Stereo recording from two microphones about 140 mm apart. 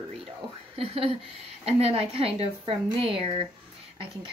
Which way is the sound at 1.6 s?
45° right (ahead or behind).